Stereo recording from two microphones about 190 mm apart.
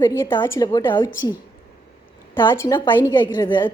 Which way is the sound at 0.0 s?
15° left (ahead or behind).